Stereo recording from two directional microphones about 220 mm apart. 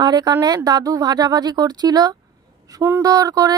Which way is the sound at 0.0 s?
20° right (ahead or behind).